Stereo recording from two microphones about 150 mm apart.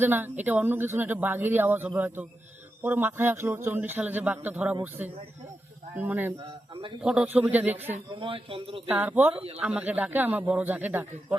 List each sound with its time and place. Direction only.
0.0 s a man's voice: 15° right (ahead or behind)
8.1 s a man's voice: 35° right (ahead or behind)
8.9 s a man's voice: 15° right (ahead or behind)